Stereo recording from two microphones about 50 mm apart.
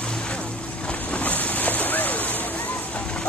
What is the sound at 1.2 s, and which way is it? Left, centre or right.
Boat, left.